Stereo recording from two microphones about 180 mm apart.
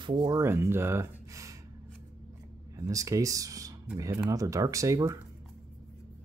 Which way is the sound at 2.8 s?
20° right (ahead or behind).